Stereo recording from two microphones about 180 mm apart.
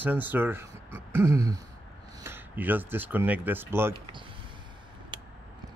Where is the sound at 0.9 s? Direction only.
15° right (ahead or behind).